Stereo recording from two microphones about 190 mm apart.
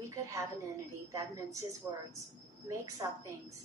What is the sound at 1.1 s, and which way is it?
A woman's voice, 15° right (ahead or behind).